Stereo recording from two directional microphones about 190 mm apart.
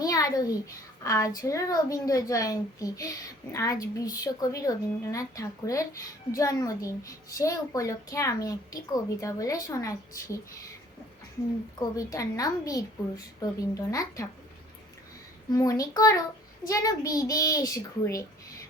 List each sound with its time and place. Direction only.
0.0 s a sound: 20° left (ahead or behind)
1.0 s a child's voice: 15° left (ahead or behind)
11.9 s a woman's voice: 20° left (ahead or behind)
15.5 s a woman's voice: 20° left (ahead or behind)